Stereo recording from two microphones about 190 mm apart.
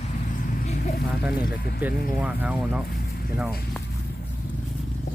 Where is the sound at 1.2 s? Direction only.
5° right (ahead or behind).